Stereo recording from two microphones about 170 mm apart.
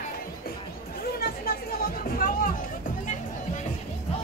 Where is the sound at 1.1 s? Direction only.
60° left (ahead or behind).